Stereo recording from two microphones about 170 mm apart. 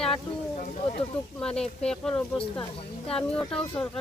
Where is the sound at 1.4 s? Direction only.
5° left (ahead or behind).